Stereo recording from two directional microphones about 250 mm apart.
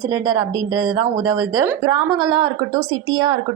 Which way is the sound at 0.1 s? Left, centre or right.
Centre.